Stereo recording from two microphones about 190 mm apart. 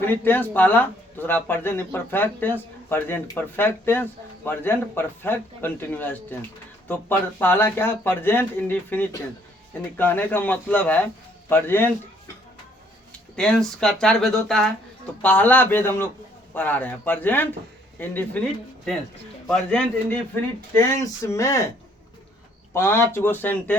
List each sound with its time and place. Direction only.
0.0 s a man's voice: 10° left (ahead or behind)
13.3 s a man's voice: 5° left (ahead or behind)
19.5 s a man's voice: 5° left (ahead or behind)
22.7 s a man's voice: 15° left (ahead or behind)